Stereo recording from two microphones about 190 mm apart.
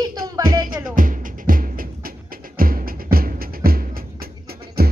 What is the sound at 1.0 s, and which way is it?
Music, 45° right (ahead or behind).